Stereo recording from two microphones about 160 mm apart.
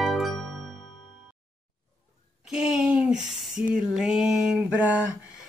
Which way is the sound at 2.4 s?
5° right (ahead or behind).